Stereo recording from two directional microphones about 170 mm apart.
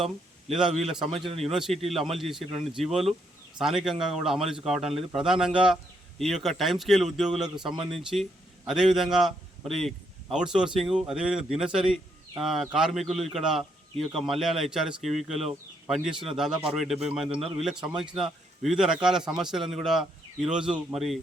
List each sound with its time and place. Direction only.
0.9 s speech: centre (ahead or behind)
1.2 s a man's voice: 35° right (ahead or behind)
1.5 s a man's voice: centre (ahead or behind)
16.1 s a man's voice: 35° right (ahead or behind)
16.6 s speech: centre (ahead or behind)